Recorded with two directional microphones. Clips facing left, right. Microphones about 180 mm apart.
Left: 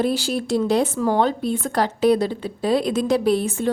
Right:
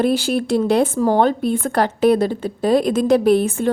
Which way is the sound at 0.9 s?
45° right (ahead or behind).